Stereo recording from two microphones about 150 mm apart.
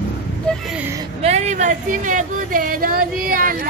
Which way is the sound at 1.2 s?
50° right (ahead or behind).